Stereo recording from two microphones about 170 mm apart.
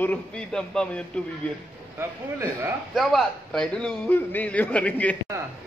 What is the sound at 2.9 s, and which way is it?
A man's voice, centre (ahead or behind).